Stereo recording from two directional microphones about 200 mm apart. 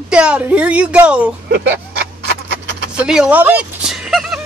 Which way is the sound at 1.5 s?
55° right (ahead or behind).